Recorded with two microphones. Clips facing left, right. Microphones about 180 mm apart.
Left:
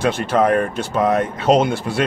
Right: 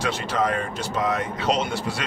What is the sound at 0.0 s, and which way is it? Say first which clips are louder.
Speech: left 7 dB; 55° left (ahead or behind).